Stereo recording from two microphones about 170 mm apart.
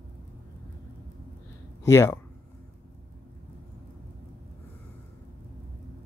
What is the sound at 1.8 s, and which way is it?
Speech, 15° left (ahead or behind).